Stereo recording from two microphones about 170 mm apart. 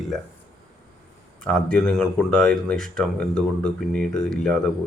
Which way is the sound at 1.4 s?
5° left (ahead or behind).